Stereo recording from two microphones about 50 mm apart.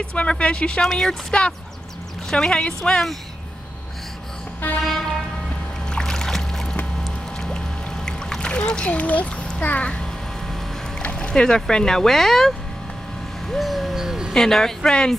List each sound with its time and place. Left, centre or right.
0.0 s a woman's voice: centre
4.6 s vehicle: left
5.9 s music: centre
7.3 s a sound: centre; by 9.3 s left
9.6 s a child's voice: left
11.0 s speech: left
13.5 s owl: centre
14.0 s dog: centre
14.3 s a woman's voice: centre